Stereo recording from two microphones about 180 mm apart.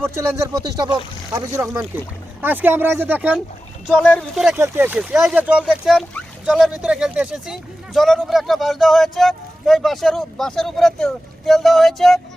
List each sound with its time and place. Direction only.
0.0 s speech: 15° right (ahead or behind)
3.8 s speech: 5° left (ahead or behind)
4.5 s speech: 10° right (ahead or behind)